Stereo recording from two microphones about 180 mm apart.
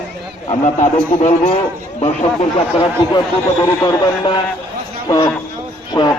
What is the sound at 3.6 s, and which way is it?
Speech, 20° left (ahead or behind).